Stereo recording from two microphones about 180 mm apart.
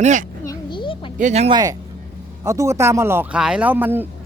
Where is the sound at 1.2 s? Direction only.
35° right (ahead or behind).